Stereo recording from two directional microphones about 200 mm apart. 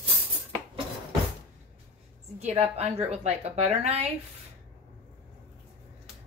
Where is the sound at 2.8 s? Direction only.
30° right (ahead or behind).